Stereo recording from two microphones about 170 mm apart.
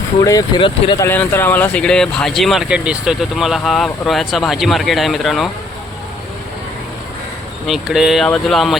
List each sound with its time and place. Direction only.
0.2 s speech: 20° left (ahead or behind)
1.0 s speech: 10° left (ahead or behind)
7.7 s speech: centre (ahead or behind)